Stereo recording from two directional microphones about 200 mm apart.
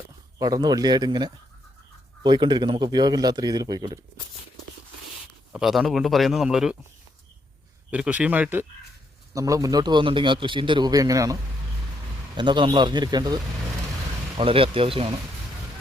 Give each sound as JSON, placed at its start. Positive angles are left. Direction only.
{"t": 0.3, "sound": "a man's voice", "side_deg": -20}
{"t": 5.5, "sound": "a man's voice", "side_deg": 0}
{"t": 7.9, "sound": "a man's voice", "side_deg": -5}
{"t": 12.4, "sound": "a man's voice", "side_deg": -25}